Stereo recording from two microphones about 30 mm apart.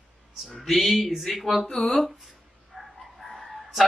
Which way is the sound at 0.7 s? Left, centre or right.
Centre.